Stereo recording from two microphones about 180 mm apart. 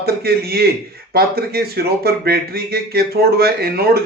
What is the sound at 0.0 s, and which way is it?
Speech, 60° right (ahead or behind).